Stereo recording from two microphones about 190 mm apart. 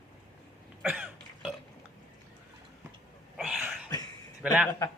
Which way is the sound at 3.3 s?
Centre (ahead or behind).